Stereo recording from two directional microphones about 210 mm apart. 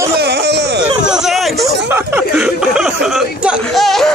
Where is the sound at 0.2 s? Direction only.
50° right (ahead or behind).